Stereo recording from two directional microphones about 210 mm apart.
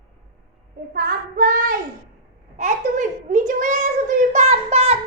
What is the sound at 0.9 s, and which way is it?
Child singing, 45° right (ahead or behind).